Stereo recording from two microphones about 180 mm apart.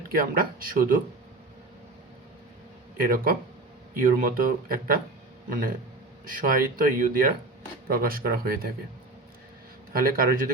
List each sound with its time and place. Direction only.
0.1 s speech: 50° right (ahead or behind)
3.0 s speech: 50° right (ahead or behind)
9.9 s speech: 55° right (ahead or behind)